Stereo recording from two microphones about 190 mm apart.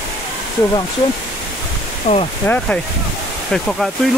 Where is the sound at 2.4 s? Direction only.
5° left (ahead or behind).